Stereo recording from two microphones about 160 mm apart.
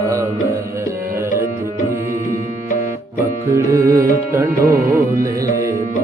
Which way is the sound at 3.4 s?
20° right (ahead or behind).